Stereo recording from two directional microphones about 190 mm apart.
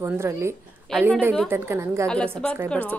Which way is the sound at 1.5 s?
15° right (ahead or behind).